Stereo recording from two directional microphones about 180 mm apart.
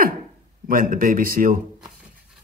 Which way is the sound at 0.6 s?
50° right (ahead or behind).